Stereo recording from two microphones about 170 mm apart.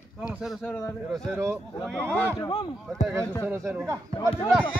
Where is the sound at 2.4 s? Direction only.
30° left (ahead or behind).